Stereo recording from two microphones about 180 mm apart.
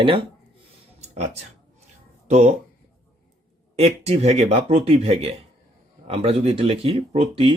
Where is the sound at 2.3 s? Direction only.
40° right (ahead or behind).